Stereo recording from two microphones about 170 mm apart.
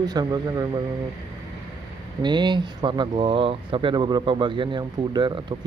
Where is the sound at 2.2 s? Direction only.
25° right (ahead or behind).